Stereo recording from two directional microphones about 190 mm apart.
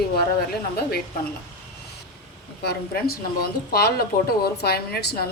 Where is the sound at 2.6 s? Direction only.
55° left (ahead or behind).